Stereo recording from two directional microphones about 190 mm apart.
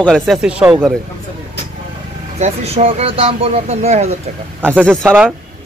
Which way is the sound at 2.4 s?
30° right (ahead or behind).